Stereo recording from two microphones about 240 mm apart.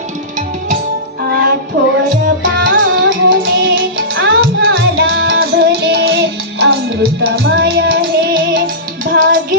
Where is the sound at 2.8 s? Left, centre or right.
Right.